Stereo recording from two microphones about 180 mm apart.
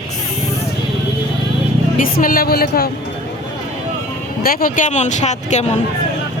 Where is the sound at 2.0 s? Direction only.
55° left (ahead or behind).